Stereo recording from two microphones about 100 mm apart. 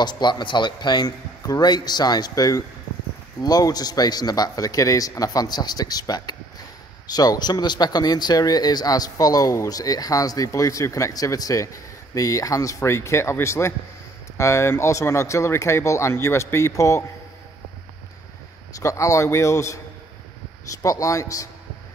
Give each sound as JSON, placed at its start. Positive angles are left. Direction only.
{"t": 0.0, "sound": "a man's voice", "side_deg": 45}
{"t": 18.8, "sound": "speech", "side_deg": 30}